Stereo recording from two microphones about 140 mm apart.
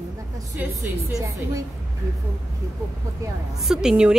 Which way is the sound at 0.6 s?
20° right (ahead or behind).